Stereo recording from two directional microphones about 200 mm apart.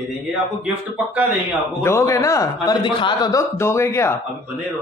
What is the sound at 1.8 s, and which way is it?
A man's voice, 15° left (ahead or behind).